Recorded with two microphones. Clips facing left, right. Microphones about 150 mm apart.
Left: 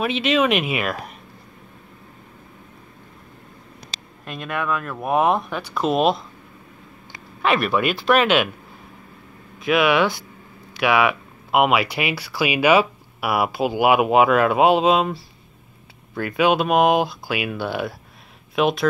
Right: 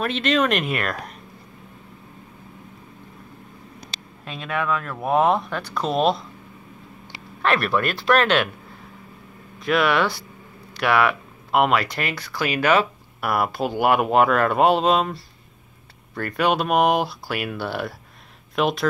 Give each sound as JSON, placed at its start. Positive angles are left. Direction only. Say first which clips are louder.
{"t": 0.0, "sound": "speech", "louder": "left 2 dB", "side_deg": 5}
{"t": 4.2, "sound": "speech", "louder": "even", "side_deg": 0}
{"t": 7.4, "sound": "speech", "louder": "left 2 dB", "side_deg": 0}
{"t": 9.6, "sound": "speech", "louder": "left 2 dB", "side_deg": 5}